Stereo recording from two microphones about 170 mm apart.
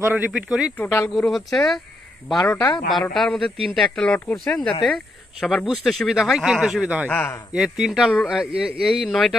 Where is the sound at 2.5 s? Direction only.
15° left (ahead or behind).